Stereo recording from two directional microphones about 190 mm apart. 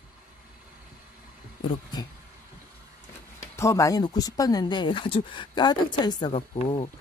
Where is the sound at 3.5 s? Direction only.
15° left (ahead or behind); by 6.9 s 30° left (ahead or behind).